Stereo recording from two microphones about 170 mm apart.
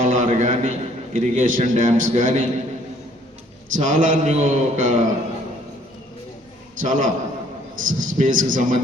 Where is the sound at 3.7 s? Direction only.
50° right (ahead or behind).